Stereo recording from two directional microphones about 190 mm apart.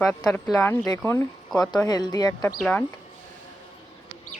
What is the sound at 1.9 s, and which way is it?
Speech, 20° left (ahead or behind).